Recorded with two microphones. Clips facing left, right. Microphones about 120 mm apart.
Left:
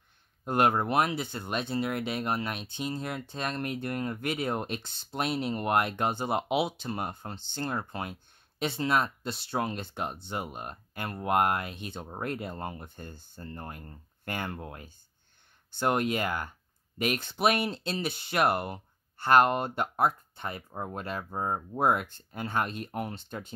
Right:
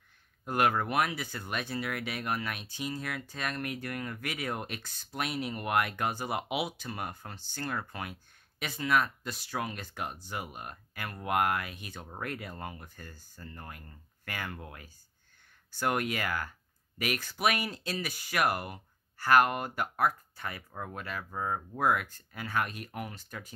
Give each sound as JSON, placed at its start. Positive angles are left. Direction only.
{"t": 0.5, "sound": "speech", "side_deg": 25}